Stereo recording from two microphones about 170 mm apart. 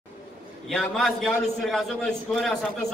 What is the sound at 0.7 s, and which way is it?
A man's voice, centre (ahead or behind).